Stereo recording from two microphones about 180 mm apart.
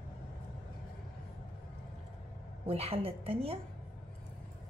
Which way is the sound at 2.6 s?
35° right (ahead or behind).